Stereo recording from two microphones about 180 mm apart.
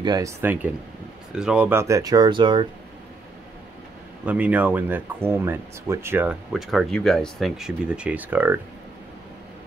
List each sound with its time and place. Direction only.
0.0 s speech: 20° right (ahead or behind)
0.4 s speech: 10° right (ahead or behind); by 2.7 s 25° right (ahead or behind)
4.3 s speech: 10° right (ahead or behind)